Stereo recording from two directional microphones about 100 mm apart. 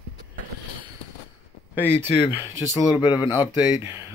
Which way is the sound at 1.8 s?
25° right (ahead or behind).